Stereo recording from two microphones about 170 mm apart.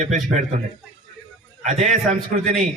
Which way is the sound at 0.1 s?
45° right (ahead or behind).